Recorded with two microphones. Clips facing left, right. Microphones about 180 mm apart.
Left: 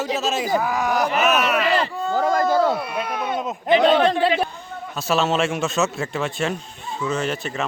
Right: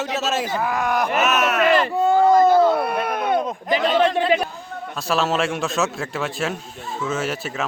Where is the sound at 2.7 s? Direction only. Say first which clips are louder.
Right 4 dB; 55° right (ahead or behind).